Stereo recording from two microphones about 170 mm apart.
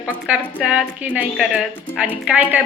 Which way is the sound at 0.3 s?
5° right (ahead or behind).